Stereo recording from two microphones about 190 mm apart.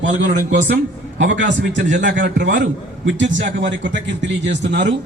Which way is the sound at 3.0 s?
75° right (ahead or behind).